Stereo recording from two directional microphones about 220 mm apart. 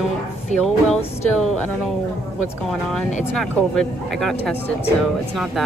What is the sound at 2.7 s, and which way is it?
Speech, centre (ahead or behind).